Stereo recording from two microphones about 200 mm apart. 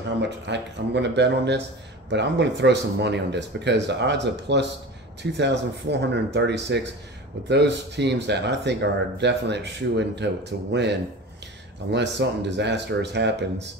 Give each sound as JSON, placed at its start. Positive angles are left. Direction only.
{"t": 0.2, "sound": "speech", "side_deg": -60}